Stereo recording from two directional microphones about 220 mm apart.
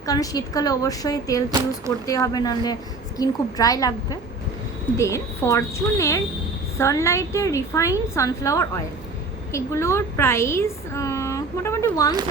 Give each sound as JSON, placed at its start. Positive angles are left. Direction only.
{"t": 0.0, "sound": "a woman's voice", "side_deg": 15}
{"t": 1.5, "sound": "speech", "side_deg": -15}
{"t": 2.0, "sound": "a woman's voice", "side_deg": 15}